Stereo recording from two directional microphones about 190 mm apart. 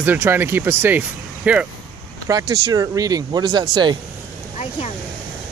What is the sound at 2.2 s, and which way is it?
Speech, 20° right (ahead or behind).